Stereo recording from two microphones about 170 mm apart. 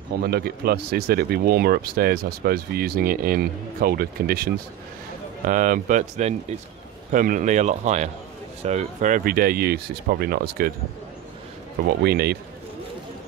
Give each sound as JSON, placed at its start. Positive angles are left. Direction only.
{"t": 0.2, "sound": "speech", "side_deg": -65}
{"t": 5.5, "sound": "speech", "side_deg": -50}
{"t": 11.9, "sound": "a man's voice", "side_deg": -70}